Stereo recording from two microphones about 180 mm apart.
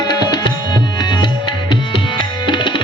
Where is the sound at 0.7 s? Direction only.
25° left (ahead or behind).